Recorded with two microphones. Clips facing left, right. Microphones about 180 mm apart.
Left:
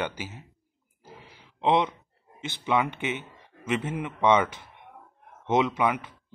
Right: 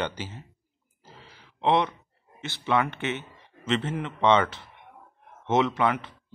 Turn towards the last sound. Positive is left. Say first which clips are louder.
# right 1 dB
turn(degrees=15)  # may be behind; listen again after turning